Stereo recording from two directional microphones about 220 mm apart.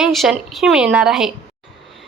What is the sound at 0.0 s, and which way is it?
A woman's voice, centre (ahead or behind).